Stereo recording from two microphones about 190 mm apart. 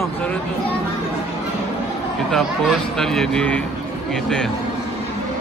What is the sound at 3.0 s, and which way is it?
Speech, 5° left (ahead or behind).